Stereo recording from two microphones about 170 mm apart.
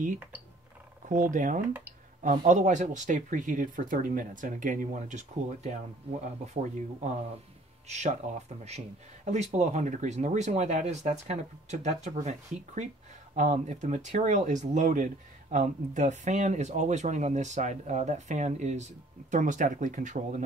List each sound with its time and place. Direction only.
1.0 s speech: 50° right (ahead or behind)